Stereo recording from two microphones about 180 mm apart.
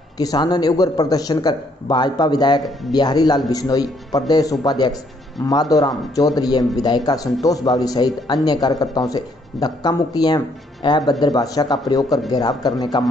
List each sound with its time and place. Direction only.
0.2 s a man's voice: 20° left (ahead or behind)